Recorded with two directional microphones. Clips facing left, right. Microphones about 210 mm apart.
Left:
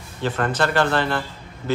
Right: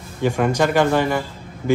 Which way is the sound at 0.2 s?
10° right (ahead or behind).